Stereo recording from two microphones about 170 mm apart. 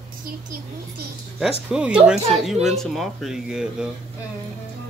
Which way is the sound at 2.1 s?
35° right (ahead or behind).